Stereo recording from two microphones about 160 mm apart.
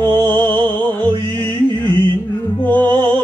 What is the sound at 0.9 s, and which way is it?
Music, 15° left (ahead or behind).